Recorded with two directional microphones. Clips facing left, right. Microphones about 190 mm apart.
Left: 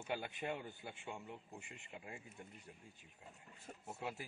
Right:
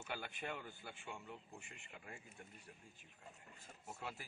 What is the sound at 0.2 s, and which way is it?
A man's voice, 20° left (ahead or behind).